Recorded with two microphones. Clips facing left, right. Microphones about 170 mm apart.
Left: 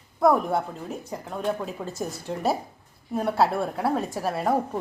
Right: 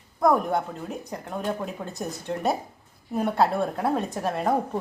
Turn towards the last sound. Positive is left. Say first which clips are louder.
# even
turn(degrees=5)  # may be behind; listen again after turning